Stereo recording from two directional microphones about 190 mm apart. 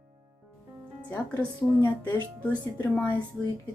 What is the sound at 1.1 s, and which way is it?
A woman's voice, 10° left (ahead or behind).